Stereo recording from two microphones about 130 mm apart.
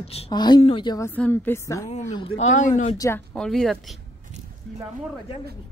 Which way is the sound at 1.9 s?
65° left (ahead or behind).